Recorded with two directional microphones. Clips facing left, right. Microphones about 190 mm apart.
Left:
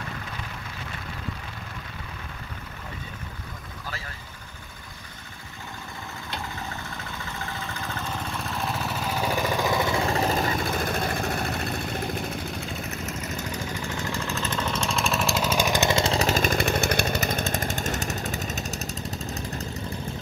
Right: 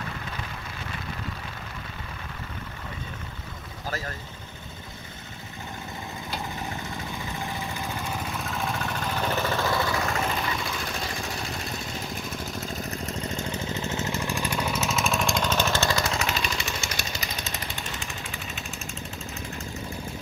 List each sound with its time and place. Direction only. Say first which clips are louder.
3.8 s vehicle: right 7 dB; 40° right (ahead or behind)
6.5 s vehicle: right 2 dB; 20° right (ahead or behind); by 12.5 s 60° left (ahead or behind)
12.5 s engine: right 1 dB; 35° right (ahead or behind); by 19.4 s 40° left (ahead or behind)